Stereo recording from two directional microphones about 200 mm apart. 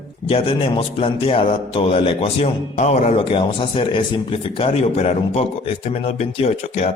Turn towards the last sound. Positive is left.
turn(degrees=35)  # may be behind; listen again after turning